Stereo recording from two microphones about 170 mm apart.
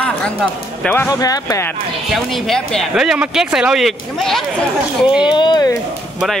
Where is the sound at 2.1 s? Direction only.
Centre (ahead or behind).